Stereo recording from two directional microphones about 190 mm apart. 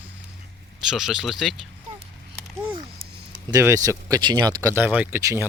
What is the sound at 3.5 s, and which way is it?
Speech, 15° right (ahead or behind).